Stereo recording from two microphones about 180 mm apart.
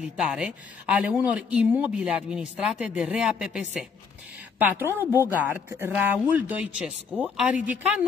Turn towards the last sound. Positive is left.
turn(degrees=-5)  # may be behind; listen again after turning